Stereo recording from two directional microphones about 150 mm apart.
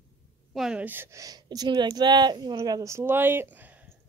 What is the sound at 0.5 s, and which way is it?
Speech, 5° right (ahead or behind).